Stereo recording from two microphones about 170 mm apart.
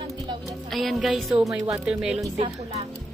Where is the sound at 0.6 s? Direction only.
Centre (ahead or behind).